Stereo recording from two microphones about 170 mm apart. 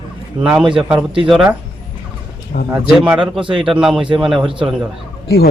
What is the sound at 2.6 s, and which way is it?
Speech, 10° right (ahead or behind).